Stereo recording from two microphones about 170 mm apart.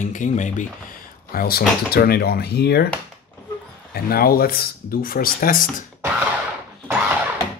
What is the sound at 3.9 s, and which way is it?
Speech, 60° left (ahead or behind).